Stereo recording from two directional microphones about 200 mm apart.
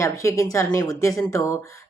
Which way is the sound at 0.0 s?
15° left (ahead or behind).